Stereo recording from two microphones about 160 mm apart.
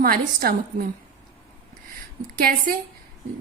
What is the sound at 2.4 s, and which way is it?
Speech, 65° right (ahead or behind).